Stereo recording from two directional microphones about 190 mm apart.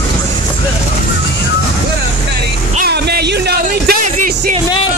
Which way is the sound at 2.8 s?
55° right (ahead or behind).